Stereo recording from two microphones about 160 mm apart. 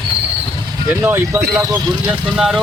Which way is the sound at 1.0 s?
15° right (ahead or behind).